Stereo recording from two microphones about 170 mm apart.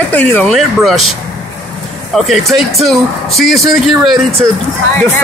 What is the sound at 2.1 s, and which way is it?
Speech, centre (ahead or behind).